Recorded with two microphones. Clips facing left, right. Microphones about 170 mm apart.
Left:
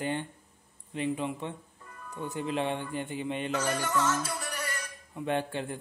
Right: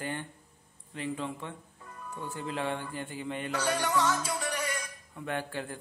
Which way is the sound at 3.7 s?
15° right (ahead or behind).